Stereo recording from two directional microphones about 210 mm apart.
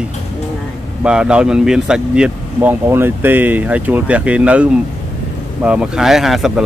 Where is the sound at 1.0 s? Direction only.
5° right (ahead or behind).